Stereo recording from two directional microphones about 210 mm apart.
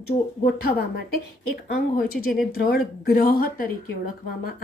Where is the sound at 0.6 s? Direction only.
50° left (ahead or behind).